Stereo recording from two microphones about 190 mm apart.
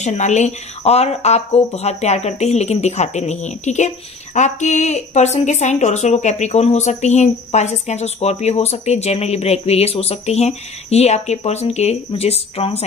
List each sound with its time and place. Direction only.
0.0 s speech: 40° left (ahead or behind)